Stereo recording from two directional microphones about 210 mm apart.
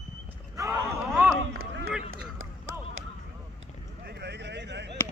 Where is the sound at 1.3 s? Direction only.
85° right.